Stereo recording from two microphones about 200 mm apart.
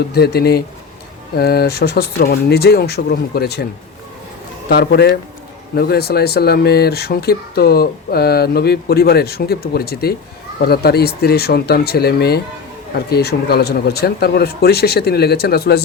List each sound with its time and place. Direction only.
0.1 s speech: 55° left (ahead or behind)
4.7 s speech: 50° left (ahead or behind)